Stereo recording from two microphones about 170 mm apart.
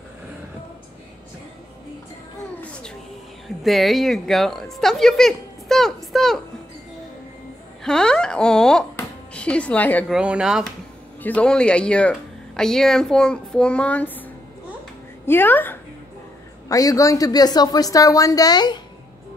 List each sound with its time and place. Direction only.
3.4 s a woman's voice: centre (ahead or behind)
7.8 s a woman's voice: 5° left (ahead or behind)
10.0 s speech: 5° right (ahead or behind)
11.2 s speech: 5° left (ahead or behind)
15.2 s speech: 10° left (ahead or behind)